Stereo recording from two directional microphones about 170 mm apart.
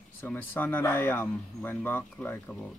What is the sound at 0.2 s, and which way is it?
Speech, 10° left (ahead or behind).